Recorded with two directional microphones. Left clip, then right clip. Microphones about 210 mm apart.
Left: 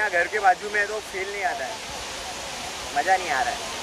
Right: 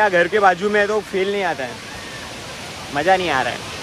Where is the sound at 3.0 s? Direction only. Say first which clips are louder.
Right 5 dB; 5° right (ahead or behind).